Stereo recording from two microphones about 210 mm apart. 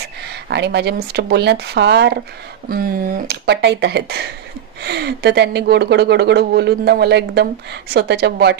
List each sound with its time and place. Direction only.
0.5 s speech: 55° right (ahead or behind)